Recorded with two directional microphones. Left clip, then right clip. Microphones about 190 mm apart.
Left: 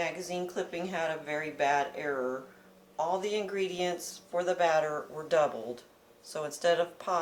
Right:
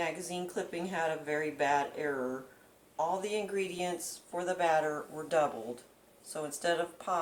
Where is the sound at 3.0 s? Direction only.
30° left (ahead or behind).